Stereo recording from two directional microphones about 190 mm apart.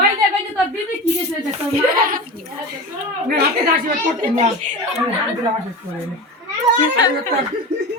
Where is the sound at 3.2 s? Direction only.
55° right (ahead or behind).